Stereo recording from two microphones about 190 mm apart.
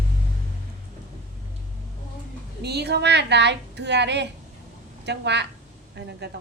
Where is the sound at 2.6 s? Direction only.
60° right (ahead or behind).